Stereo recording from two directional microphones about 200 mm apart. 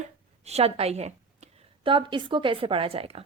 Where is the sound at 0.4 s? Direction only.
30° right (ahead or behind).